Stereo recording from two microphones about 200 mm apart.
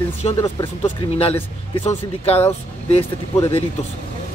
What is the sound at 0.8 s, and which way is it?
Speech, 30° left (ahead or behind).